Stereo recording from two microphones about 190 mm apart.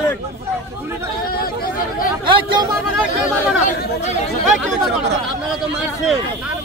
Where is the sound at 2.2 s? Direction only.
25° right (ahead or behind).